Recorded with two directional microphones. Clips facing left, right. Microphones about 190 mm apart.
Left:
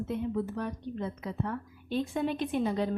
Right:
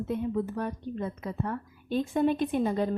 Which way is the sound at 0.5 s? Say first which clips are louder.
Right 2 dB; 50° right (ahead or behind).